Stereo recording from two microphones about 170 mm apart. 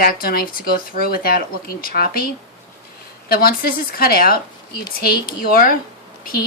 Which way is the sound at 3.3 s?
60° left (ahead or behind).